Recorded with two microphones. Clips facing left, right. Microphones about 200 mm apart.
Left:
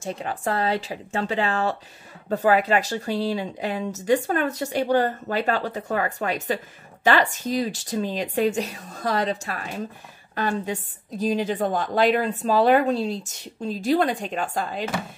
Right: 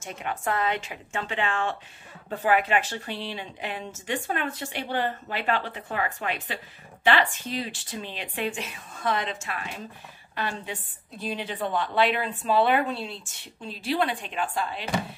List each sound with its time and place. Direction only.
0.0 s a woman's voice: 30° left (ahead or behind)